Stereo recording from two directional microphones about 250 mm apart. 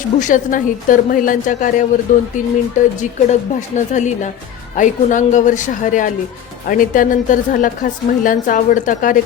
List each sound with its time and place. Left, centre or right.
0.2 s a woman's voice: left